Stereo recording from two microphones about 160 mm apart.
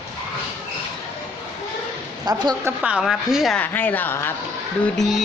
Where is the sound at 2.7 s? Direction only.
5° right (ahead or behind).